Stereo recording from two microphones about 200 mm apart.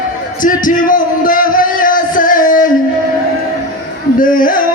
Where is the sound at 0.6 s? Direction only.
45° left (ahead or behind).